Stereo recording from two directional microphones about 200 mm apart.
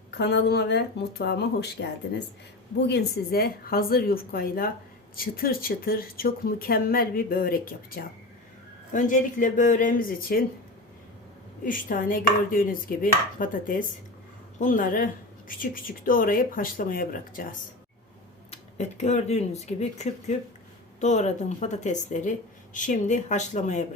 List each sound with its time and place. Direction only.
0.1 s speech: 60° left (ahead or behind)
11.6 s speech: 45° left (ahead or behind)
18.5 s speech: 35° left (ahead or behind)